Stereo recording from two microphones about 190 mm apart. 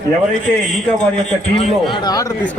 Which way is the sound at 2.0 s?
20° left (ahead or behind).